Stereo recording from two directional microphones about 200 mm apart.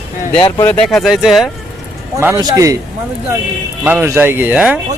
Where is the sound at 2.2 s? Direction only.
15° right (ahead or behind).